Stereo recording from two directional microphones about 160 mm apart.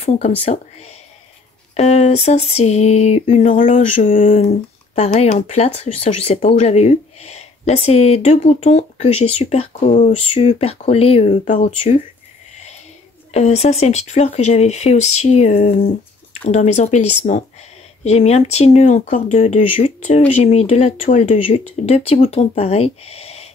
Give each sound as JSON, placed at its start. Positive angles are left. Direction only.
{"t": 0.5, "sound": "speech", "side_deg": 40}
{"t": 13.3, "sound": "speech", "side_deg": 45}